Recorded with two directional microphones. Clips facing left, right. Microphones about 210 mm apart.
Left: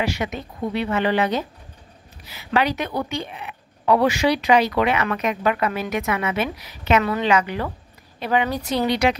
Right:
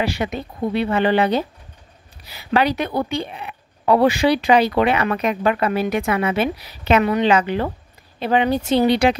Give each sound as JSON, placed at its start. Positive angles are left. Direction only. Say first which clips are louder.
{"t": 0.0, "sound": "speech", "louder": "right 2 dB", "side_deg": -30}